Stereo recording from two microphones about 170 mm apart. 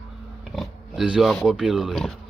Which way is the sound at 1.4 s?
Centre (ahead or behind).